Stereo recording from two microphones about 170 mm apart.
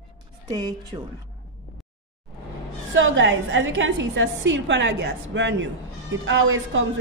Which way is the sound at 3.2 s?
90° right.